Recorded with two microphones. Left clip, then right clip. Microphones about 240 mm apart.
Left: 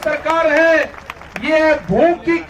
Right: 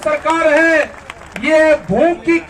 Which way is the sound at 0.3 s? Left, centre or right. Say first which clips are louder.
Right 1 dB; right.